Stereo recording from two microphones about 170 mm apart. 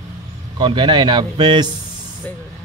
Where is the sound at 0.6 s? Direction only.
30° right (ahead or behind).